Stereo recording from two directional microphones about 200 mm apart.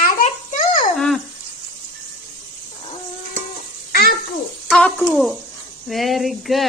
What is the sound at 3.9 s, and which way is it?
Babbling, 50° left (ahead or behind).